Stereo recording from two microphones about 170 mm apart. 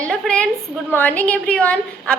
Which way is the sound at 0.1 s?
5° left (ahead or behind).